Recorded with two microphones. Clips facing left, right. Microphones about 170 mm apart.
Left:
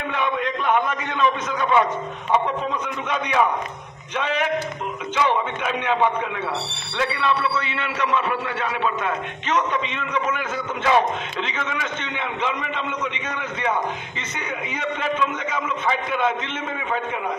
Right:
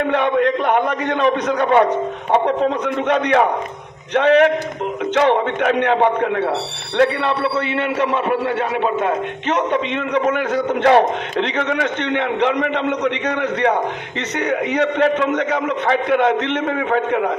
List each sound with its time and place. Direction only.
0.0 s a man's voice: 65° right (ahead or behind)